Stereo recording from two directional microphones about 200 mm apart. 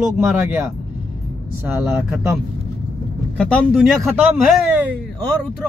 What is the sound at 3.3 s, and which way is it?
Speech, 5° left (ahead or behind).